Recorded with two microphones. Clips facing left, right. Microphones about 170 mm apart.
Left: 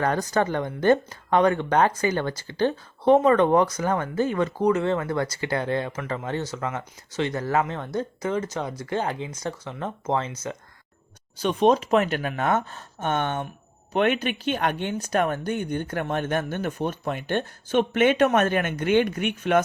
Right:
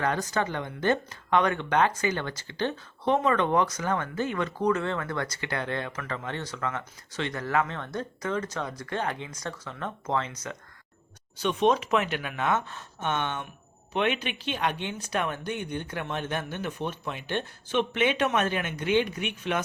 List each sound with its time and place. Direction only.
0.0 s speech: 40° left (ahead or behind)
4.6 s speech: 25° left (ahead or behind)
6.2 s speech: 40° left (ahead or behind)
6.6 s speech: 25° left (ahead or behind)
11.3 s speech: 40° left (ahead or behind)